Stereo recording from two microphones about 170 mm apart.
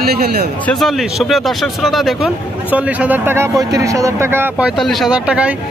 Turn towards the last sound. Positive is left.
turn(degrees=-5)  # may be behind; listen again after turning